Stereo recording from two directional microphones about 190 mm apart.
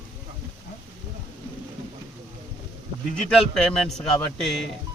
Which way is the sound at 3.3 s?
5° left (ahead or behind).